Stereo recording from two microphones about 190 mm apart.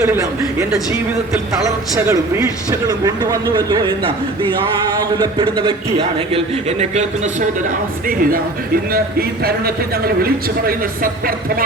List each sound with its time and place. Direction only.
0.0 s speech: 15° right (ahead or behind)
1.6 s a man's voice: 15° right (ahead or behind); by 7.0 s 35° right (ahead or behind)
8.0 s speech: 50° right (ahead or behind)